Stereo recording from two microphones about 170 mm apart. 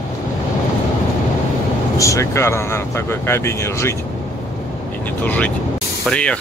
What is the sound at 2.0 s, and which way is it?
Speech, 20° left (ahead or behind).